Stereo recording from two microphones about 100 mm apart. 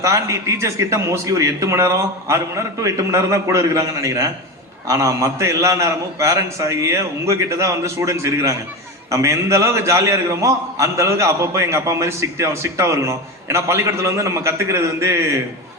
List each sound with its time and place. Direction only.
0.0 s a man's voice: 30° right (ahead or behind)